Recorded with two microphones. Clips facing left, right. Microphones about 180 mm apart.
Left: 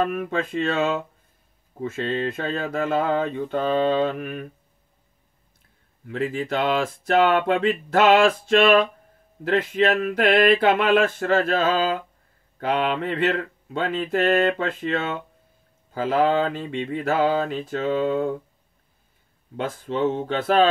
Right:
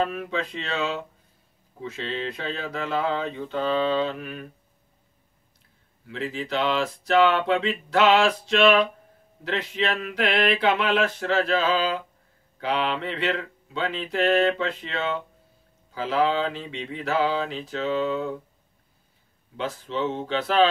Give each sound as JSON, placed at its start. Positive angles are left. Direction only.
{"t": 0.0, "sound": "speech", "side_deg": 50}
{"t": 6.0, "sound": "speech", "side_deg": 50}
{"t": 19.5, "sound": "speech", "side_deg": 50}